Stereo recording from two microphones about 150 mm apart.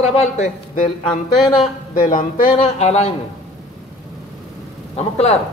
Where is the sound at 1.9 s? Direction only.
60° left (ahead or behind).